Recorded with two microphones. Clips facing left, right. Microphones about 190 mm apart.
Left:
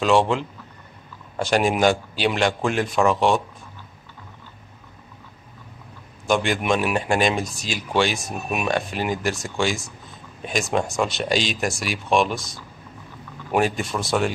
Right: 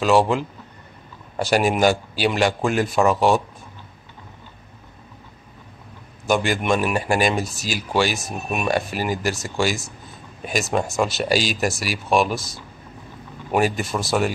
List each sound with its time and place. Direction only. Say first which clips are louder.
0.0 s speech: right 1 dB; 5° right (ahead or behind)
6.2 s speech: right 1 dB; 5° right (ahead or behind)